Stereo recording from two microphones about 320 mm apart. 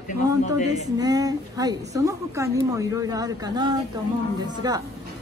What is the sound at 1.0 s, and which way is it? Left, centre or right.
A woman's voice, centre.